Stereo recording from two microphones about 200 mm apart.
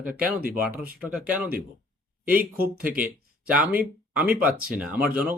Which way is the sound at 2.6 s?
50° right (ahead or behind).